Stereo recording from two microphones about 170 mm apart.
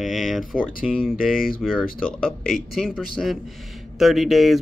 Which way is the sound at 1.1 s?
55° left (ahead or behind).